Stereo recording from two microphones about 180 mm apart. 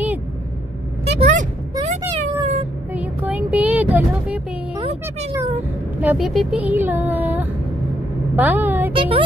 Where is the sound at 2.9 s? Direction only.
10° right (ahead or behind).